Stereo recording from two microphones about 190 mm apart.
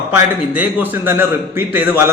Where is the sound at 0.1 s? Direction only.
10° right (ahead or behind).